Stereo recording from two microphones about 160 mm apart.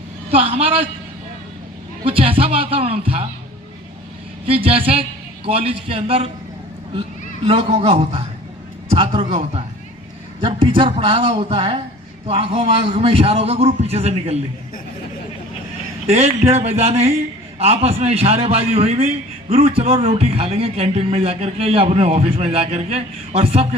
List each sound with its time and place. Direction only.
0.3 s a man's voice: 40° right (ahead or behind)
2.0 s music: 35° right (ahead or behind)
4.4 s a man's voice: 35° right (ahead or behind)
7.4 s a man's voice: 35° right (ahead or behind)
16.0 s a man's voice: 40° right (ahead or behind)